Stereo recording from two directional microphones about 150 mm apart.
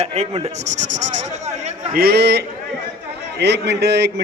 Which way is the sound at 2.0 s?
90° right.